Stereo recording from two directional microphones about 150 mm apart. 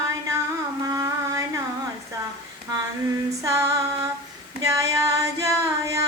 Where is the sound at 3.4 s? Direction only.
20° right (ahead or behind).